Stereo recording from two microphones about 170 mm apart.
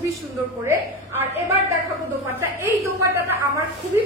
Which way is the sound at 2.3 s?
15° right (ahead or behind).